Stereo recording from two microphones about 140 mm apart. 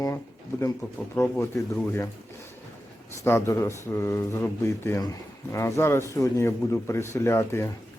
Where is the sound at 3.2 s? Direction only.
15° left (ahead or behind).